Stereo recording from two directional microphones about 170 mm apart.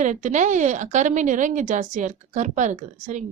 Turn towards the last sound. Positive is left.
turn(degrees=-45)  # may be behind; listen again after turning